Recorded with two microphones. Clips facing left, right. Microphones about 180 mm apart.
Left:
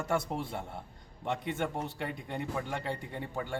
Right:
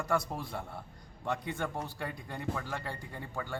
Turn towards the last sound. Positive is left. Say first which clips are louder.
# left 3 dB
turn(degrees=25)  # may be behind; listen again after turning